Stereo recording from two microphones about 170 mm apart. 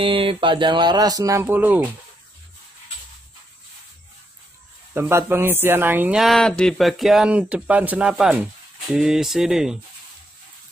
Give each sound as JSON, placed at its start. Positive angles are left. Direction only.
{"t": 0.0, "sound": "speech", "side_deg": -30}
{"t": 4.9, "sound": "speech", "side_deg": -15}